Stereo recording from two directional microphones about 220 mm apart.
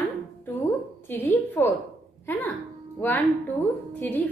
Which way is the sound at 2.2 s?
10° left (ahead or behind).